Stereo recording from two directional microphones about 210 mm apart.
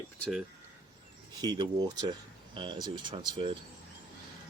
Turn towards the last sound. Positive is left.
turn(degrees=-25)  # may be behind; listen again after turning